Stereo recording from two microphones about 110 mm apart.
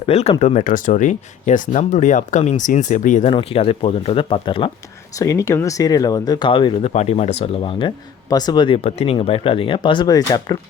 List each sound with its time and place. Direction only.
0.0 s speech: 70° left (ahead or behind); by 3.3 s 90° left
3.3 s speech: 60° left (ahead or behind)
5.2 s speech: 30° left (ahead or behind); by 6.7 s 45° left (ahead or behind)
6.8 s speech: 80° left
7.6 s speech: 50° left (ahead or behind)
8.3 s speech: 35° left (ahead or behind)
8.8 s speech: 70° left (ahead or behind)
9.1 s speech: 55° left (ahead or behind)
10.1 s speech: 35° left (ahead or behind)